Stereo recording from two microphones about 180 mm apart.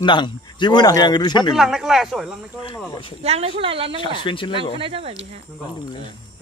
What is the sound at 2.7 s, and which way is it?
Speech, 20° left (ahead or behind).